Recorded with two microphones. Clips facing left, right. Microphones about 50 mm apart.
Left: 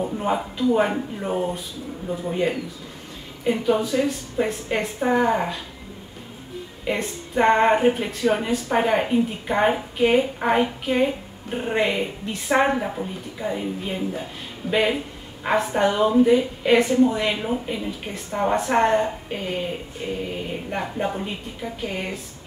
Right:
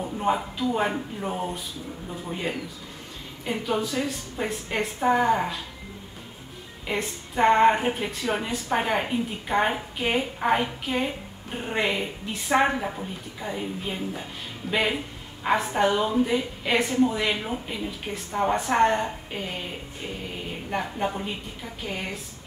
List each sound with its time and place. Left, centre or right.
0.2 s speech: centre
6.8 s a woman's voice: centre